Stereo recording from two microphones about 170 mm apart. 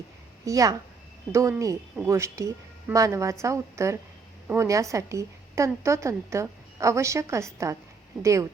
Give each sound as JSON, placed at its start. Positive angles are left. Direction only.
{"t": 0.4, "sound": "a woman's voice", "side_deg": -20}